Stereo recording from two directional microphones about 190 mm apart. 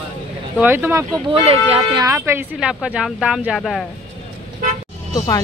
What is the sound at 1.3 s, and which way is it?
Speech, 30° right (ahead or behind).